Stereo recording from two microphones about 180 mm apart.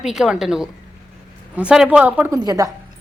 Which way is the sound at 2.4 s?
20° right (ahead or behind).